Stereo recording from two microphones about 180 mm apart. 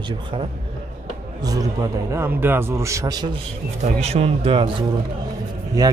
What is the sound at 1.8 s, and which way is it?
Speech, 15° right (ahead or behind).